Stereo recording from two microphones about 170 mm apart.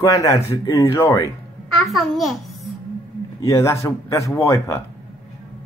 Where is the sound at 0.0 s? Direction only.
20° left (ahead or behind).